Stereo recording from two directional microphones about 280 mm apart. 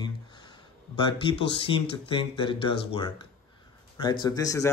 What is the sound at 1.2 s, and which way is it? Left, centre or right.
Speech, centre.